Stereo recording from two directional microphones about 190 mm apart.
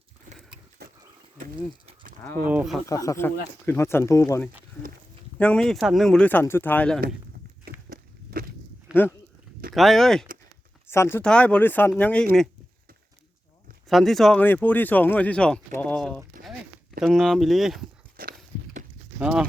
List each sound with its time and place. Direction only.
2.4 s speech: 10° right (ahead or behind)
2.8 s speech: 15° left (ahead or behind)
5.4 s speech: 5° left (ahead or behind)
7.9 s walk: 50° right (ahead or behind)
8.9 s a sound: 5° right (ahead or behind)
9.7 s speech: centre (ahead or behind)
10.8 s speech: 15° left (ahead or behind)
13.8 s speech: centre (ahead or behind)
18.2 s dog: 45° right (ahead or behind)
19.2 s speech: 5° right (ahead or behind)